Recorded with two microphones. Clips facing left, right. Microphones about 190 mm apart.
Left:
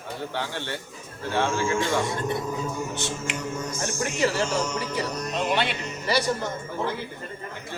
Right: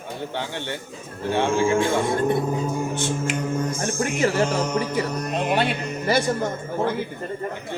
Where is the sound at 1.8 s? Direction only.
55° right (ahead or behind).